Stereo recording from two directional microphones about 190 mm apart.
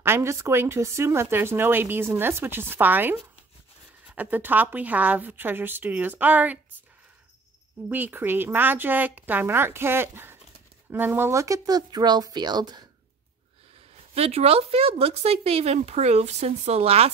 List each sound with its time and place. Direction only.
0.0 s speech: 15° right (ahead or behind)
7.9 s speech: 10° right (ahead or behind)
14.1 s speech: 30° right (ahead or behind)